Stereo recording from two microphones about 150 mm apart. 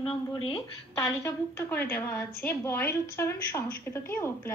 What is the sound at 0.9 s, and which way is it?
A woman's voice, 20° left (ahead or behind).